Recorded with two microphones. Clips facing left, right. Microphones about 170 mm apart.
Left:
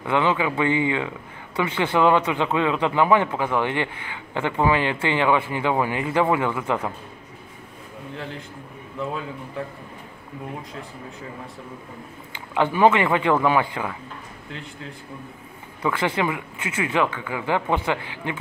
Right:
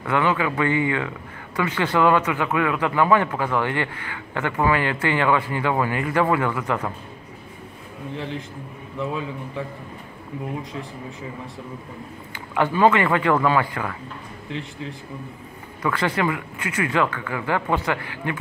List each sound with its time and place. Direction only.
0.0 s speech: 20° left (ahead or behind)
6.5 s speech: 25° left (ahead or behind)
12.5 s a man's voice: 15° left (ahead or behind)
15.8 s speech: 10° left (ahead or behind)